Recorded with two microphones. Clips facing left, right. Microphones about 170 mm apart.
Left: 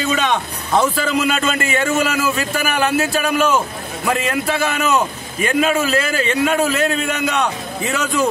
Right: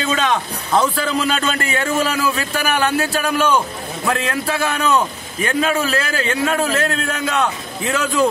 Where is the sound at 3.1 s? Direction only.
Centre (ahead or behind).